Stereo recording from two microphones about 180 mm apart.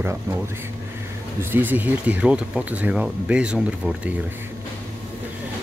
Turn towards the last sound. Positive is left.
turn(degrees=-5)  # may be behind; listen again after turning